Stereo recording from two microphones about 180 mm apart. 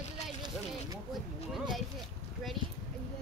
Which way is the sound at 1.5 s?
Centre (ahead or behind).